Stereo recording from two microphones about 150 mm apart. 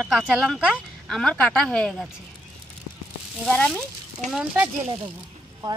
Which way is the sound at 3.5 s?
10° left (ahead or behind).